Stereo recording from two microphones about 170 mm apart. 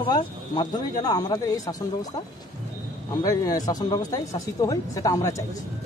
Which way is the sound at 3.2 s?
20° left (ahead or behind).